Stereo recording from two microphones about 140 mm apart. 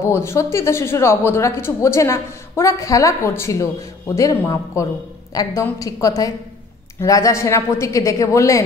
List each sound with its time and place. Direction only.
0.0 s a woman's voice: 20° left (ahead or behind)